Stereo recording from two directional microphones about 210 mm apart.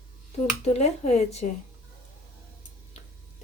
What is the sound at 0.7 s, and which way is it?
Speech, 30° left (ahead or behind).